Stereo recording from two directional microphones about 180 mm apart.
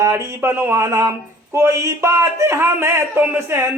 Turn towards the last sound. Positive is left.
turn(degrees=-10)  # may be behind; listen again after turning